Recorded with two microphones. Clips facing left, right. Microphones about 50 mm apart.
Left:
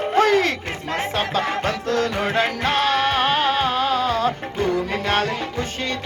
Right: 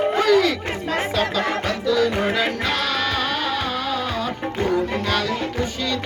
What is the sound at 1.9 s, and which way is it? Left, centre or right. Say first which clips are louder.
Music: right 2 dB; left.